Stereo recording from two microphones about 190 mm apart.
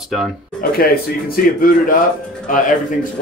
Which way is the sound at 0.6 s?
50° left (ahead or behind).